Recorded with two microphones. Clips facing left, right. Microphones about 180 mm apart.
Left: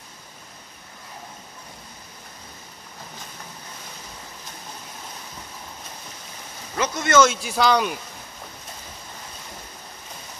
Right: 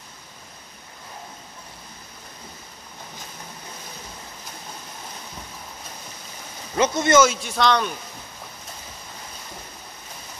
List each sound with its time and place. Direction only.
6.8 s speech: 20° right (ahead or behind)
7.2 s speech: centre (ahead or behind)